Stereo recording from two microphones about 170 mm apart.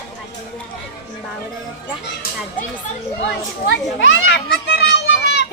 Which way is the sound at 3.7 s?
90° left.